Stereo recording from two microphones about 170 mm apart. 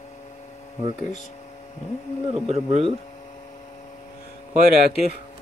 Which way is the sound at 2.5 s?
40° right (ahead or behind).